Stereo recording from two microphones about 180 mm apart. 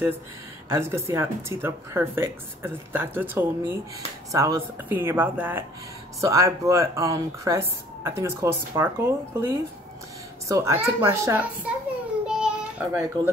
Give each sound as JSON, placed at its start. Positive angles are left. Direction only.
{"t": 0.7, "sound": "speech", "side_deg": -15}
{"t": 12.3, "sound": "child singing", "side_deg": -5}